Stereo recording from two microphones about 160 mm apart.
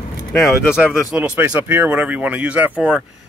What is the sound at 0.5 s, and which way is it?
Speech, 5° right (ahead or behind).